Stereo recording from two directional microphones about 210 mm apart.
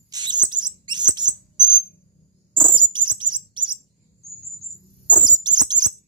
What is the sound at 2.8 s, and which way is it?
Chirp, 20° right (ahead or behind).